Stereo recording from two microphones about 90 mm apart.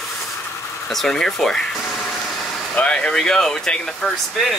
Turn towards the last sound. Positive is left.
turn(degrees=5)  # may be behind; listen again after turning